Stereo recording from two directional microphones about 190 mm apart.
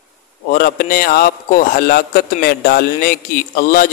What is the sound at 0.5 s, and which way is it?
A man's voice, 50° left (ahead or behind).